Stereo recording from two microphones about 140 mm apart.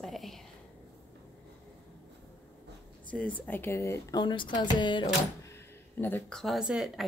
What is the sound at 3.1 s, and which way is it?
Speech, 10° left (ahead or behind).